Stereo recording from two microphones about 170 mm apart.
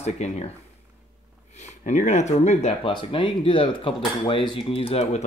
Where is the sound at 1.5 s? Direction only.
45° left (ahead or behind).